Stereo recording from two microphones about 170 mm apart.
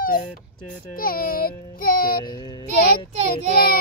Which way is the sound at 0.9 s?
60° left (ahead or behind).